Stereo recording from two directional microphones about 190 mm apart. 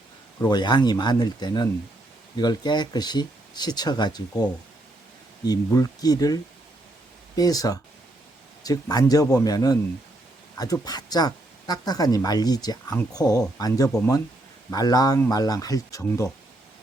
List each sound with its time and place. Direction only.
0.4 s speech: 25° left (ahead or behind)
5.5 s speech: 20° left (ahead or behind)